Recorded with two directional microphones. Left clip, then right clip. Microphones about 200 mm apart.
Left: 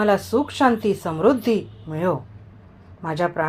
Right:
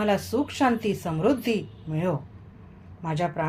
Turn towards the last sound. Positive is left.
turn(degrees=20)  # may be behind; listen again after turning